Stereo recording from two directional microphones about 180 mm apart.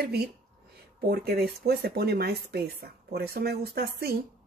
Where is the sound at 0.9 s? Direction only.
60° right (ahead or behind).